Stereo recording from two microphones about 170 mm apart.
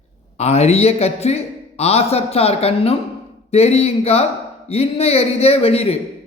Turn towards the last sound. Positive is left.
turn(degrees=35)  # may be behind; listen again after turning